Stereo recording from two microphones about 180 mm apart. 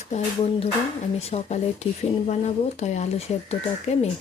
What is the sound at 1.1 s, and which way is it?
A woman's voice, 35° left (ahead or behind).